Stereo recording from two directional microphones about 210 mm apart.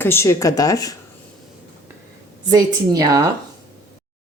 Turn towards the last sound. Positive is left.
turn(degrees=-15)  # may be behind; listen again after turning